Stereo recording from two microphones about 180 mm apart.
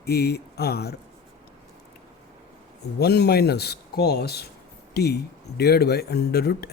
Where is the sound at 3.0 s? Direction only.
65° left (ahead or behind).